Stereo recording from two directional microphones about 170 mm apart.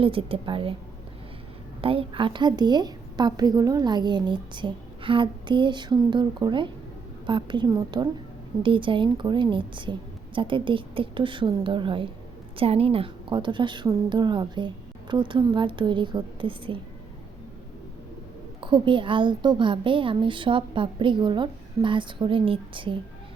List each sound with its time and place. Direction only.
0.0 s a woman's voice: 30° right (ahead or behind)
1.8 s a woman's voice: 30° right (ahead or behind)
18.6 s a woman's voice: 30° right (ahead or behind)